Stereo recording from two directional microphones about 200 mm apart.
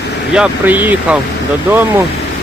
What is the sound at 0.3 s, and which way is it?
Speech, 5° right (ahead or behind).